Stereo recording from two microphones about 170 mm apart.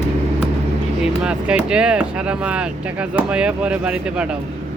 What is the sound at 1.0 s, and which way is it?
Speech, 5° right (ahead or behind).